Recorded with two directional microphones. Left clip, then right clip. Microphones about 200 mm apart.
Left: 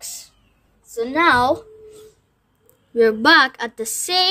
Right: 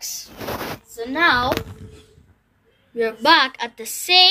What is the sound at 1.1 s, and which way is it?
Speech, 60° left (ahead or behind).